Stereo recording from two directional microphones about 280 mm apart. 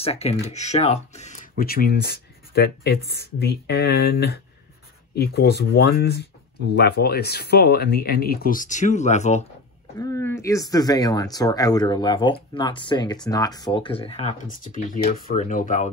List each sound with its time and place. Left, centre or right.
0.0 s speech: left
9.9 s speech: centre; by 15.9 s left